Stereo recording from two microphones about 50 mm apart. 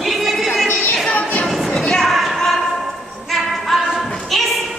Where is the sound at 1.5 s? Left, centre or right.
Centre.